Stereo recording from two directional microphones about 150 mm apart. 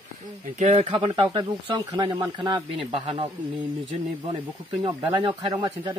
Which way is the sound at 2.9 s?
35° right (ahead or behind).